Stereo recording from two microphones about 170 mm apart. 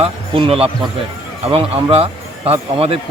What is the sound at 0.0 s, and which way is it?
Speech, 35° right (ahead or behind).